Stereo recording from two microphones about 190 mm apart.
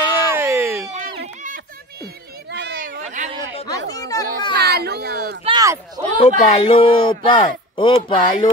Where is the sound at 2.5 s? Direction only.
60° right (ahead or behind); by 3.3 s 40° right (ahead or behind).